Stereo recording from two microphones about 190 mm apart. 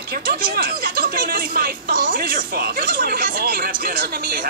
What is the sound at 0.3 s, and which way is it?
Speech, 50° right (ahead or behind).